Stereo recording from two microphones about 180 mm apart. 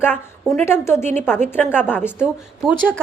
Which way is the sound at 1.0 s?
40° right (ahead or behind).